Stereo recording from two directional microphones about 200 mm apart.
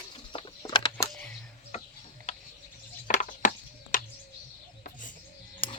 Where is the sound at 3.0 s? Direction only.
40° left (ahead or behind).